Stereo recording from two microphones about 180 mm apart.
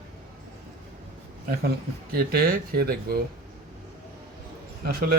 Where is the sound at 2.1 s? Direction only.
55° right (ahead or behind).